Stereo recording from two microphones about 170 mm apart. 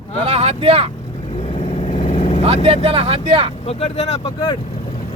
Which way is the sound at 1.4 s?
40° left (ahead or behind).